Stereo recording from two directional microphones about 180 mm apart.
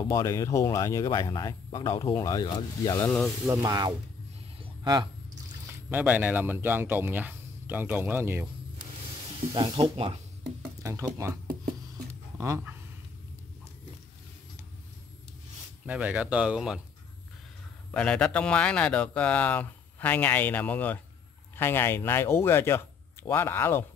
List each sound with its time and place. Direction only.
0.0 s speech: 20° left (ahead or behind)
3.4 s speech: 20° right (ahead or behind)
4.6 s a sound: 25° right (ahead or behind)
5.9 s speech: 10° right (ahead or behind)
9.5 s speech: 25° right (ahead or behind)
10.8 s speech: 15° right (ahead or behind)
12.4 s speech: 15° right (ahead or behind)
15.8 s speech: 5° right (ahead or behind)
17.9 s a man's voice: 5° left (ahead or behind)